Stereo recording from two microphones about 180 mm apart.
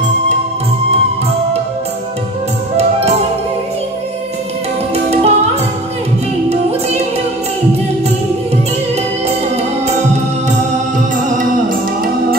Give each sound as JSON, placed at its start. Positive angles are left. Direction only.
{"t": 5.1, "sound": "music", "side_deg": -35}